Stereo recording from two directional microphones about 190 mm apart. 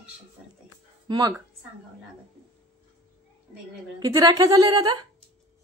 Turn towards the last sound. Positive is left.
turn(degrees=-20)  # may be behind; listen again after turning